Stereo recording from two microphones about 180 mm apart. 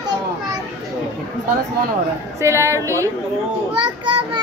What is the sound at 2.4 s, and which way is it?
Speech, 15° right (ahead or behind).